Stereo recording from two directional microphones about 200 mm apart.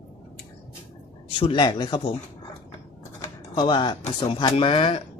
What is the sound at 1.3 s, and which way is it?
Speech, 25° left (ahead or behind).